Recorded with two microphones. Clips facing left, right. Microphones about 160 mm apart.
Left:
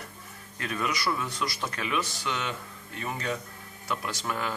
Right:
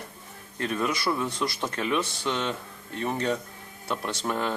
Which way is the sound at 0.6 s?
30° right (ahead or behind).